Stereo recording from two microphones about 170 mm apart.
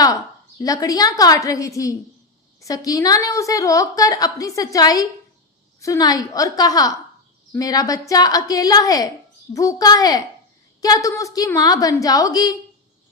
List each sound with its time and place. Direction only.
0.6 s a woman's voice: 20° left (ahead or behind)